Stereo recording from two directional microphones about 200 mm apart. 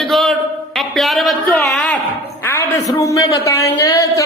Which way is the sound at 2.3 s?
15° left (ahead or behind).